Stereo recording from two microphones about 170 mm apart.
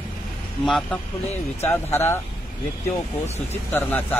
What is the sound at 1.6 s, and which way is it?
Speech, 15° left (ahead or behind).